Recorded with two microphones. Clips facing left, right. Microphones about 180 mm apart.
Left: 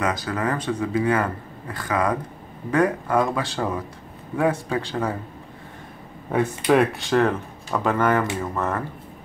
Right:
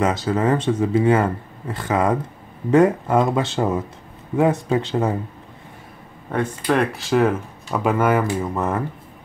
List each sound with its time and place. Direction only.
0.0 s speech: 25° right (ahead or behind)
6.3 s speech: centre (ahead or behind)